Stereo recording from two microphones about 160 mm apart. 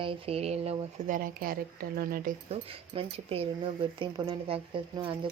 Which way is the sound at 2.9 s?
35° right (ahead or behind).